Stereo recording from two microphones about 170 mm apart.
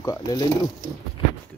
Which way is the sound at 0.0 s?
20° left (ahead or behind).